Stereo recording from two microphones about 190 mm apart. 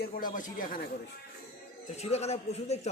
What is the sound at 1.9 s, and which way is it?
Speech, 35° left (ahead or behind).